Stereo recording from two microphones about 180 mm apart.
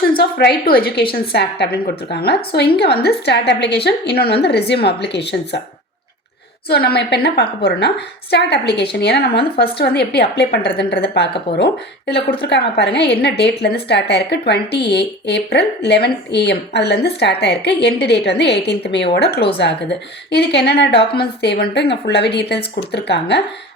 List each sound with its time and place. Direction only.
0.1 s a woman's voice: 65° left (ahead or behind)
6.7 s a woman's voice: 60° left (ahead or behind)